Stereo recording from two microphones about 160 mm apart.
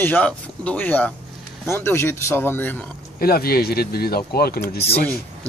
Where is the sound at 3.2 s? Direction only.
70° left (ahead or behind).